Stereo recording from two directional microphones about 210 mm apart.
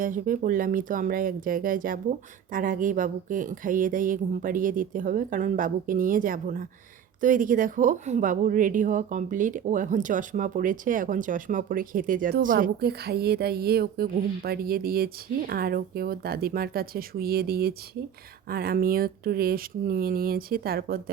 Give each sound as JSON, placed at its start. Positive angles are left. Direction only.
{"t": 0.0, "sound": "speech", "side_deg": -40}